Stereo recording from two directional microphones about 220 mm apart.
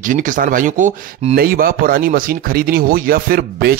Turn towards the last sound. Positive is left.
turn(degrees=-45)  # may be behind; listen again after turning